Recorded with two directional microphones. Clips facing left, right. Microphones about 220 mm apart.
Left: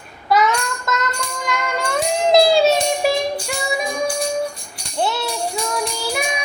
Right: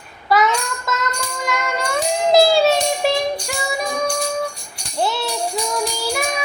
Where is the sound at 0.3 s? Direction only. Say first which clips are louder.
Even; centre (ahead or behind).